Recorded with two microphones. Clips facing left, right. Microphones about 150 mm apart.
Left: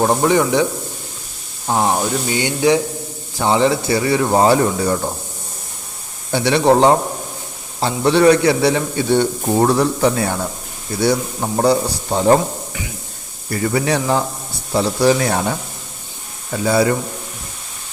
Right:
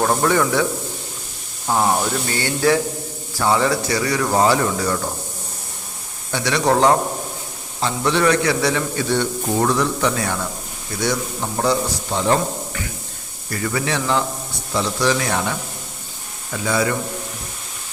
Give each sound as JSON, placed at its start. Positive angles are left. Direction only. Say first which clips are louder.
{"t": 0.0, "sound": "speech", "louder": "left 3 dB", "side_deg": 15}
{"t": 6.3, "sound": "a man's voice", "louder": "left 5 dB", "side_deg": 30}
{"t": 13.5, "sound": "a man's voice", "louder": "left 5 dB", "side_deg": 30}